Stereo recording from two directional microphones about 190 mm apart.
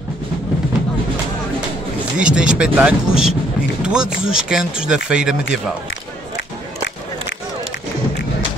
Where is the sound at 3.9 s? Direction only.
5° right (ahead or behind).